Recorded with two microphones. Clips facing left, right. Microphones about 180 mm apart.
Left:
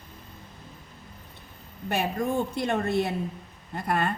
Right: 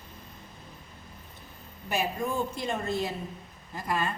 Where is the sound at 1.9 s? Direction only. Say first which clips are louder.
Left 3 dB; 60° left (ahead or behind).